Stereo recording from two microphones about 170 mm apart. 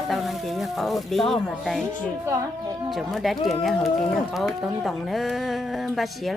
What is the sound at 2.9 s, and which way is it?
Speech, centre (ahead or behind).